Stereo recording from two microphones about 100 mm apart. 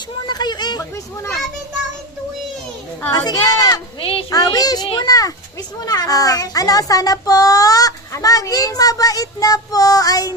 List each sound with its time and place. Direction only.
0.3 s speech: 45° left (ahead or behind)
3.1 s a child's voice: 40° left (ahead or behind)
4.0 s speech: 65° left (ahead or behind)
4.3 s a child's voice: 35° left (ahead or behind)